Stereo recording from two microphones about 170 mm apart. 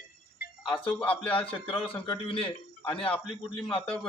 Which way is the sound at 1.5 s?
30° left (ahead or behind).